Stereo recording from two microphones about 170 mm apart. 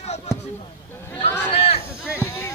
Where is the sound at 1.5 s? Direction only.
35° left (ahead or behind).